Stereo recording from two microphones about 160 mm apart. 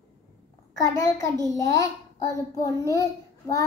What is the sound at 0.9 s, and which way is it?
Child singing, 20° left (ahead or behind).